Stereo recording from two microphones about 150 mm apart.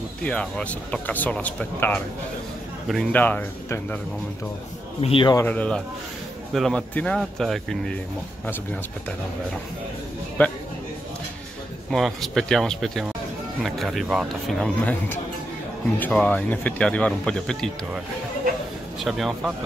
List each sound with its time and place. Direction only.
0.2 s speech: 10° left (ahead or behind)
5.0 s speech: 35° left (ahead or behind)
5.3 s speech: 15° left (ahead or behind)
10.4 s a man's voice: 10° left (ahead or behind)
11.9 s speech: centre (ahead or behind)
16.0 s speech: 10° left (ahead or behind)
18.9 s speech: centre (ahead or behind)